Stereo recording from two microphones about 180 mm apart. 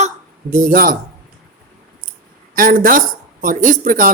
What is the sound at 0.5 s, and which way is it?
Speech, 50° right (ahead or behind).